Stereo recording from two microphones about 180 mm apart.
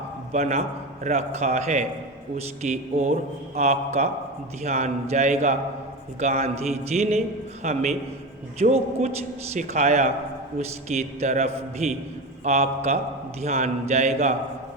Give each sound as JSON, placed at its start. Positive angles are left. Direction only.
{"t": 0.3, "sound": "a man's voice", "side_deg": -40}